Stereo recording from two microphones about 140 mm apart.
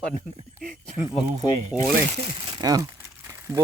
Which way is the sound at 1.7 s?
10° right (ahead or behind).